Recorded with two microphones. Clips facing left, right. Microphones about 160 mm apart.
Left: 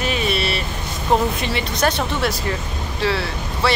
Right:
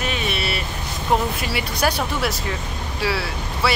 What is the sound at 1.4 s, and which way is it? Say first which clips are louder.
Speech: left 2 dB; 5° right (ahead or behind).